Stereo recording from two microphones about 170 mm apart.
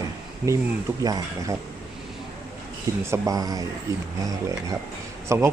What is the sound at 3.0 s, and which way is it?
Speech, 20° right (ahead or behind).